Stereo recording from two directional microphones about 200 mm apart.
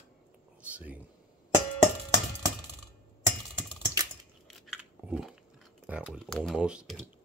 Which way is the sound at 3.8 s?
20° right (ahead or behind).